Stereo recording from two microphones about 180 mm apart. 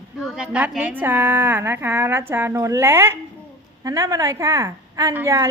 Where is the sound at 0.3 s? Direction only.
5° right (ahead or behind).